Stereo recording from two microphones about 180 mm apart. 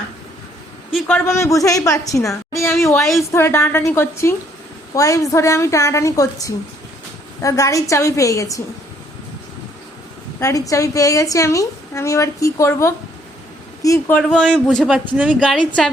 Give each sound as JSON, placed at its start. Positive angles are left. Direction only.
{"t": 0.9, "sound": "a woman's voice", "side_deg": 10}
{"t": 3.0, "sound": "a man's voice", "side_deg": 0}
{"t": 3.3, "sound": "a woman's voice", "side_deg": 15}
{"t": 10.4, "sound": "a woman's voice", "side_deg": 15}
{"t": 14.2, "sound": "a man's voice", "side_deg": 5}